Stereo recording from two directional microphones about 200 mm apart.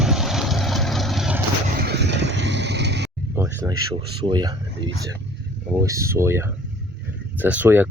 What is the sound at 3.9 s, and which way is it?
Speech, 25° right (ahead or behind).